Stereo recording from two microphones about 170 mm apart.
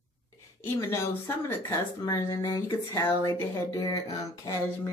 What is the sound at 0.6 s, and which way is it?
Speech, 15° left (ahead or behind).